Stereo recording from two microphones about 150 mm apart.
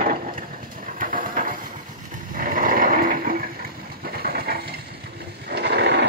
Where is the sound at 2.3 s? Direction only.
65° right (ahead or behind).